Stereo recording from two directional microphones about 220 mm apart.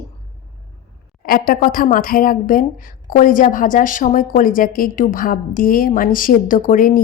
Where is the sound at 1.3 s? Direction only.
40° left (ahead or behind).